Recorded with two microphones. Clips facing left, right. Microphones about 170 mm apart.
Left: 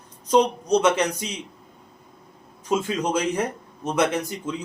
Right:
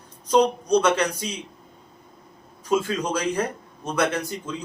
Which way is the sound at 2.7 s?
20° left (ahead or behind).